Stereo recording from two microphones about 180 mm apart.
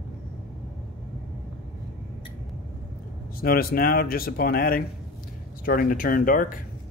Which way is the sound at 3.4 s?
55° left (ahead or behind).